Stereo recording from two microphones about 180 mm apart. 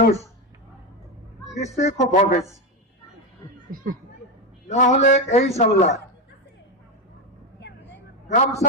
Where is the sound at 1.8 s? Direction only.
40° left (ahead or behind).